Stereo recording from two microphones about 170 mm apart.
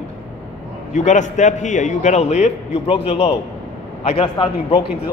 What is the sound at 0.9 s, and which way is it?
A man's voice, 45° left (ahead or behind).